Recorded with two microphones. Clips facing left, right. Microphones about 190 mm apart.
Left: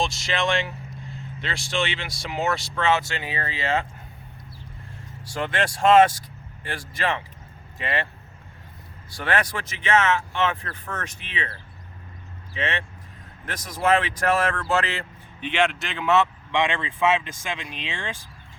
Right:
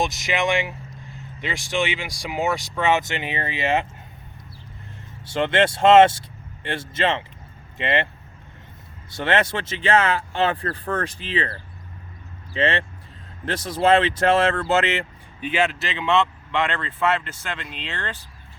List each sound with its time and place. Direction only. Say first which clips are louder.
0.0 s speech: right 2 dB; 15° right (ahead or behind)
5.2 s speech: right 6 dB; 25° right (ahead or behind)
9.1 s speech: right 4 dB; 25° right (ahead or behind)
12.5 s speech: right 6 dB; 30° right (ahead or behind)
15.4 s speech: right 1 dB; 5° right (ahead or behind); by 18.2 s 10° left (ahead or behind)